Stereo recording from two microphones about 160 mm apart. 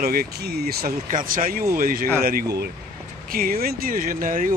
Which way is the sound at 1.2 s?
60° right (ahead or behind).